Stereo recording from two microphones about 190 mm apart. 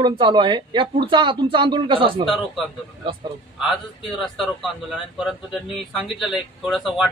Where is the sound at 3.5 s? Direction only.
Centre (ahead or behind).